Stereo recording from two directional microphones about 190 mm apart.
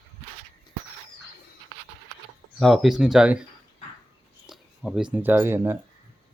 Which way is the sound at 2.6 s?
Centre (ahead or behind).